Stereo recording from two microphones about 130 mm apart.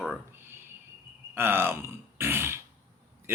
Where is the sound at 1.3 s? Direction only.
20° right (ahead or behind).